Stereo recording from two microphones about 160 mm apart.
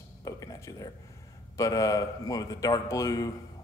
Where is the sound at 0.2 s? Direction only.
20° left (ahead or behind).